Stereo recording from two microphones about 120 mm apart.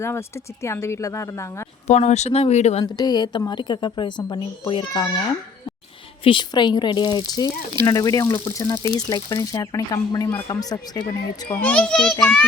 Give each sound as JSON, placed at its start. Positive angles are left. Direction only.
{"t": 0.0, "sound": "speech", "side_deg": 20}
{"t": 1.9, "sound": "speech", "side_deg": 70}
{"t": 2.8, "sound": "speech", "side_deg": 35}
{"t": 4.2, "sound": "speech", "side_deg": 25}
{"t": 4.7, "sound": "speech", "side_deg": 40}
{"t": 11.4, "sound": "a child's voice", "side_deg": 10}